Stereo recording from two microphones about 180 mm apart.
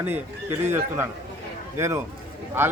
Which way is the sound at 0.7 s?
10° right (ahead or behind).